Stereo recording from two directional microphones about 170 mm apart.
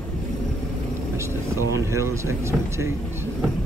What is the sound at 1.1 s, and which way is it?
Speech, 15° right (ahead or behind).